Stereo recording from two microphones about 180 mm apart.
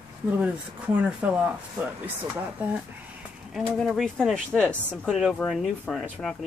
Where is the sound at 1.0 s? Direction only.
10° right (ahead or behind).